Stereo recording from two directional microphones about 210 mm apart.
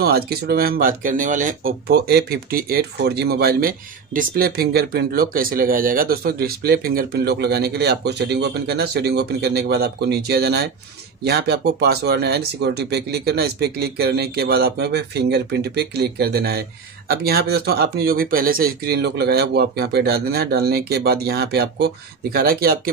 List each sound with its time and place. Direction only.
0.0 s speech: 50° right (ahead or behind)